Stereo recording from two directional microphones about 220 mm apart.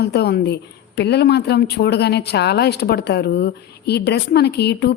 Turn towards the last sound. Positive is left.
turn(degrees=50)  # may be behind; listen again after turning